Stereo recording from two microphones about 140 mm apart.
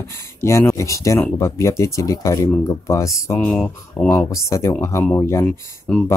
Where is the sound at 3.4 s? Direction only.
10° left (ahead or behind).